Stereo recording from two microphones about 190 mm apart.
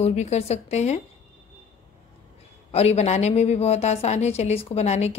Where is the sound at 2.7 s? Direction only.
35° left (ahead or behind).